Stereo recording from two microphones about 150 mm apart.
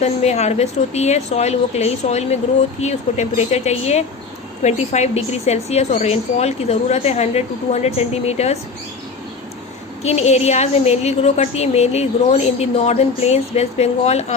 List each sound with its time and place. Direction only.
0.0 s a woman's voice: 45° left (ahead or behind)
10.0 s a woman's voice: 45° left (ahead or behind)